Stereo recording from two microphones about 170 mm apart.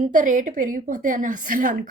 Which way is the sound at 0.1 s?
50° right (ahead or behind).